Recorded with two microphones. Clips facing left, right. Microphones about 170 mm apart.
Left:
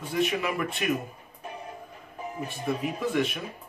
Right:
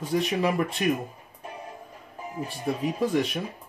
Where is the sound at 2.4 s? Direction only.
35° right (ahead or behind).